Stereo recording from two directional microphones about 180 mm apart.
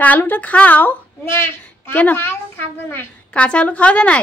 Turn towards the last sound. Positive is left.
turn(degrees=5)  # may be behind; listen again after turning